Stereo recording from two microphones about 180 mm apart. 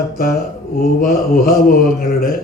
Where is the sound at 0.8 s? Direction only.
55° left (ahead or behind).